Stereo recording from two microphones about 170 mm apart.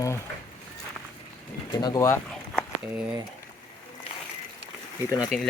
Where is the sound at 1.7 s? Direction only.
25° left (ahead or behind).